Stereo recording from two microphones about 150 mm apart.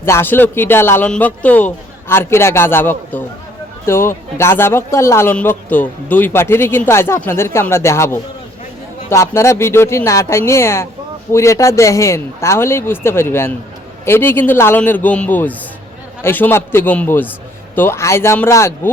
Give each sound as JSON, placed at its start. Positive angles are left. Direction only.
{"t": 0.0, "sound": "speech", "side_deg": 15}